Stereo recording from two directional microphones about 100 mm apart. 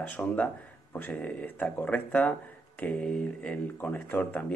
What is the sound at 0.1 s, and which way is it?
Speech, 15° left (ahead or behind).